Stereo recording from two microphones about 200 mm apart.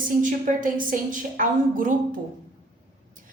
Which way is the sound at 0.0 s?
40° right (ahead or behind).